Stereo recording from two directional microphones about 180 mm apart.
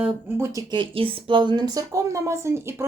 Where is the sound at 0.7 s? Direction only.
30° right (ahead or behind).